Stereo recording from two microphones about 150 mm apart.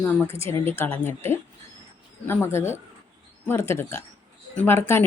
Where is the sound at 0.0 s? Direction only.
10° left (ahead or behind).